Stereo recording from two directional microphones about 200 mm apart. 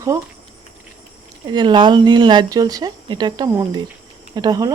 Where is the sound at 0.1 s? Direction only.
15° right (ahead or behind).